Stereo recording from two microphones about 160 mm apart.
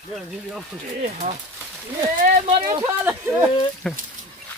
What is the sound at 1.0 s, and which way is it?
Speech, 45° right (ahead or behind).